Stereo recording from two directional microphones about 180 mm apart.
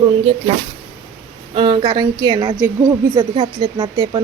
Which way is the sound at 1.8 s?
25° right (ahead or behind).